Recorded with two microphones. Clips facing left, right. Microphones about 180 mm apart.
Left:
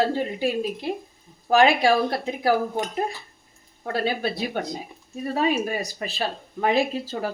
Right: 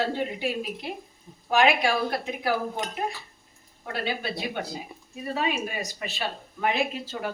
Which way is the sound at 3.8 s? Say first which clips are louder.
Left 6 dB; 35° left (ahead or behind).